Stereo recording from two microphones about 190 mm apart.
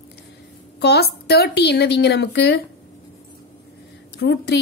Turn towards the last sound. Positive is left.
turn(degrees=60)  # may be behind; listen again after turning